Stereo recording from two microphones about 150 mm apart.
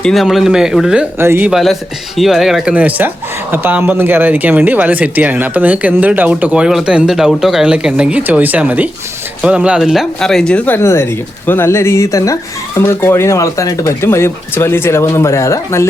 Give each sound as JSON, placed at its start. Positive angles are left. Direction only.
{"t": 0.0, "sound": "speech", "side_deg": 0}